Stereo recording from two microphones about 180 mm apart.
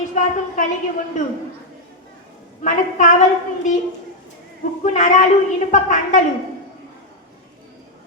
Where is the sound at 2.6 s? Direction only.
45° left (ahead or behind).